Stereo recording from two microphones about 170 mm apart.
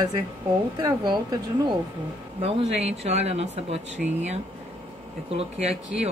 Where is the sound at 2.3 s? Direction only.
35° right (ahead or behind).